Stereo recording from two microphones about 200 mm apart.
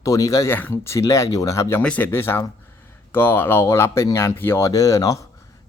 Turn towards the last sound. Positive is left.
turn(degrees=15)  # may be behind; listen again after turning